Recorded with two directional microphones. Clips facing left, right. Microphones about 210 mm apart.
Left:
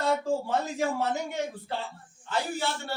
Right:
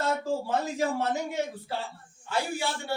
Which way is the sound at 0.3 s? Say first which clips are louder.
Left 1 dB; centre (ahead or behind).